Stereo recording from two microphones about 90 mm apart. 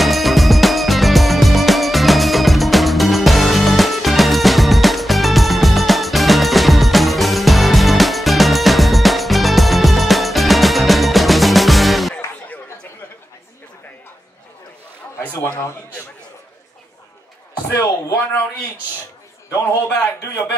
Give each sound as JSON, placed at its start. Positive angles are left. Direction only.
{"t": 0.0, "sound": "music", "side_deg": 0}
{"t": 15.4, "sound": "a sound", "side_deg": 25}
{"t": 19.5, "sound": "a man's voice", "side_deg": 30}
{"t": 19.9, "sound": "a man's voice", "side_deg": 15}